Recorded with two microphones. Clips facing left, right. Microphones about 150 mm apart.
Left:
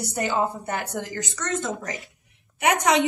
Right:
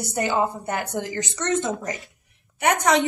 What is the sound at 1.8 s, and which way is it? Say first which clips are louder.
A woman's voice: right 3 dB; centre (ahead or behind).